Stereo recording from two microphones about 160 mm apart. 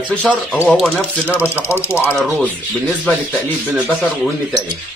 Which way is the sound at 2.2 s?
Centre (ahead or behind).